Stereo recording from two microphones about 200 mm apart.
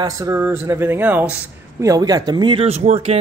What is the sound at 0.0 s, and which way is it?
Speech, 15° right (ahead or behind).